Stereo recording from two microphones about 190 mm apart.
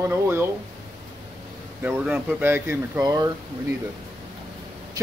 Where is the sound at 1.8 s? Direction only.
5° right (ahead or behind).